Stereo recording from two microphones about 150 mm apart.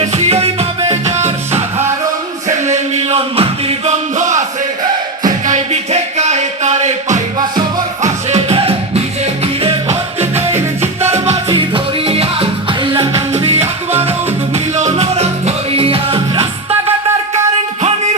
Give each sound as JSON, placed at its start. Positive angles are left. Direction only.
{"t": 0.1, "sound": "music", "side_deg": -45}
{"t": 4.2, "sound": "a sound", "side_deg": -55}
{"t": 5.5, "sound": "music", "side_deg": -50}
{"t": 8.3, "sound": "music", "side_deg": -40}
{"t": 11.4, "sound": "music", "side_deg": -30}
{"t": 13.3, "sound": "music", "side_deg": -45}